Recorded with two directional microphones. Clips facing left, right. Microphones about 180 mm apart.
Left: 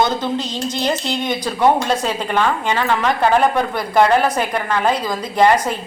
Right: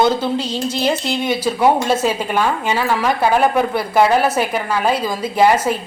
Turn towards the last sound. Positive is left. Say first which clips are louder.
# right 1 dB
turn(degrees=-5)  # may be behind; listen again after turning